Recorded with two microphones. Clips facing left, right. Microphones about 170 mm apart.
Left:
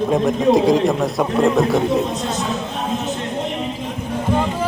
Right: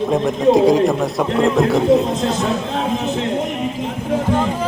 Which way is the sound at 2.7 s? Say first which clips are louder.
Right 3 dB; 90° right.